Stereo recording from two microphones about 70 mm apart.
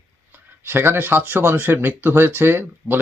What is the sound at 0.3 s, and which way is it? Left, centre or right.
Speech, right.